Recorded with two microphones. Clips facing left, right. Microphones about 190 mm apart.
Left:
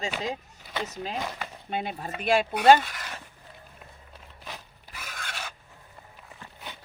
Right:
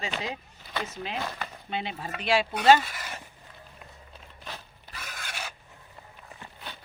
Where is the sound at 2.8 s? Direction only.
5° right (ahead or behind).